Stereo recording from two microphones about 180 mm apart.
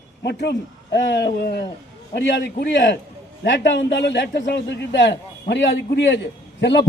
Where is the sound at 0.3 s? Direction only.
70° left (ahead or behind).